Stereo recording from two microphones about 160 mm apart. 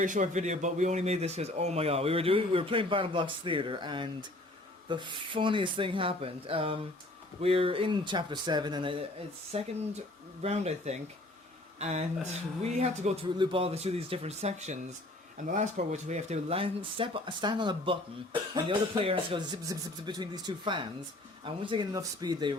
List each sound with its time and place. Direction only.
0.0 s speech: 50° right (ahead or behind)
13.2 s speech: 30° right (ahead or behind)